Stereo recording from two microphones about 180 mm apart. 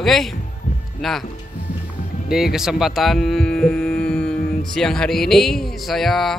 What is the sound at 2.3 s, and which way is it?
Speech, 5° right (ahead or behind).